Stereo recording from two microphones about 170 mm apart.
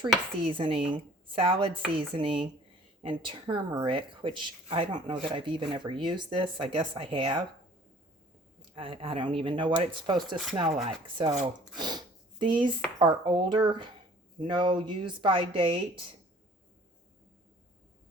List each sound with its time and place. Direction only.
0.4 s speech: 30° right (ahead or behind)
8.7 s speech: 30° right (ahead or behind)
10.2 s speech: centre (ahead or behind)
10.8 s speech: 30° right (ahead or behind)
11.8 s sniff: 25° right (ahead or behind)
13.0 s speech: 30° right (ahead or behind)